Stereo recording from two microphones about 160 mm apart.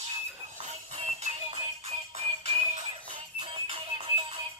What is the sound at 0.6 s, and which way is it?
Music, 45° right (ahead or behind).